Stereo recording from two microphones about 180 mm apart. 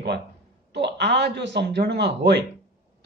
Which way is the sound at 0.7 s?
70° right (ahead or behind).